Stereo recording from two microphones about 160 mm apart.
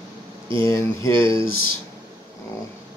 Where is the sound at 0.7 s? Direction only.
20° left (ahead or behind).